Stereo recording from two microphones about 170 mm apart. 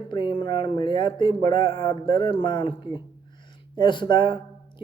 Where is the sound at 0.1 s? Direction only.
30° left (ahead or behind).